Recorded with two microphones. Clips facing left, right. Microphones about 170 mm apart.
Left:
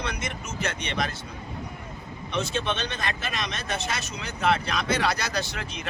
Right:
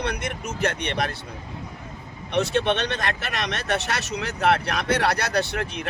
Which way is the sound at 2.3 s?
65° right (ahead or behind).